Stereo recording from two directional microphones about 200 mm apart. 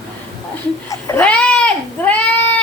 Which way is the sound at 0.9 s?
15° left (ahead or behind).